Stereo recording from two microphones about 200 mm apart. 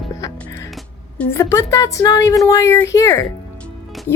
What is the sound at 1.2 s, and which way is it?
A woman's voice, 15° left (ahead or behind).